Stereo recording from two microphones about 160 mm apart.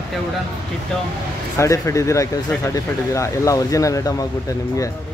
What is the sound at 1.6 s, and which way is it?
Speech, 20° left (ahead or behind).